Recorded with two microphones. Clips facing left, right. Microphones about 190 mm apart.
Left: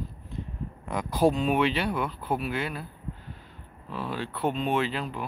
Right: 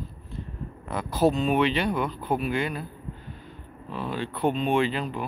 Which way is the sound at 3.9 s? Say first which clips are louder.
Right 2 dB; 5° left (ahead or behind).